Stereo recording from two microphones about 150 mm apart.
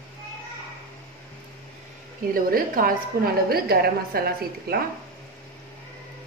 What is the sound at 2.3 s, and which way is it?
A woman's voice, 75° right (ahead or behind).